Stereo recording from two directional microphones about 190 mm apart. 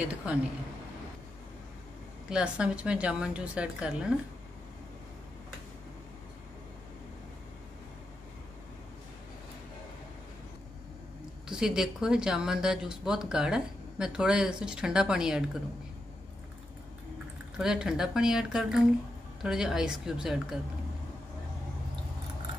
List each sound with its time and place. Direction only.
0.0 s a woman's voice: 5° right (ahead or behind)
2.2 s speech: 5° right (ahead or behind)
11.4 s speech: 5° right (ahead or behind)
17.6 s speech: 5° right (ahead or behind)